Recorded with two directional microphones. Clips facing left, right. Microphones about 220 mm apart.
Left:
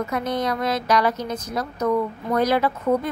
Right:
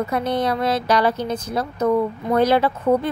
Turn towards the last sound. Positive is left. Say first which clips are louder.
# right 3 dB
turn(degrees=-30)  # may be behind; listen again after turning